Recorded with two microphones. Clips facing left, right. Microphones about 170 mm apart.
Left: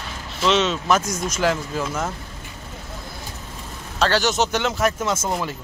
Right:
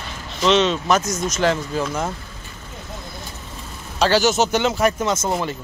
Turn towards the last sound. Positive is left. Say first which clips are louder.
# right 2 dB
turn(degrees=0)  # may be behind; listen again after turning